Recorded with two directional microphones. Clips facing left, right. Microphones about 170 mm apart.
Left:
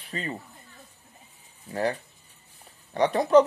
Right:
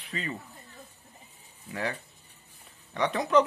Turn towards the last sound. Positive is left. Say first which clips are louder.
# left 6 dB
turn(degrees=35)  # may be behind; listen again after turning